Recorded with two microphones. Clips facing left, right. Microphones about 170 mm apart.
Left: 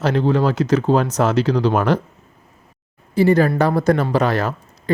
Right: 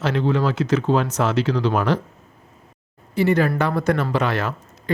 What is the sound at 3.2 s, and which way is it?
Speech, 35° left (ahead or behind).